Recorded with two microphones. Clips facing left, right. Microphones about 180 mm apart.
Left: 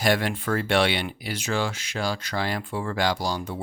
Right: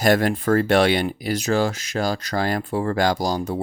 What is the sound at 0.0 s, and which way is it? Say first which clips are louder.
Speech: right 5 dB; 45° right (ahead or behind).